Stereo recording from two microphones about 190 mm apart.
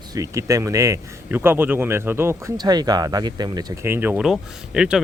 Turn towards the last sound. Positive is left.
turn(degrees=-5)  # may be behind; listen again after turning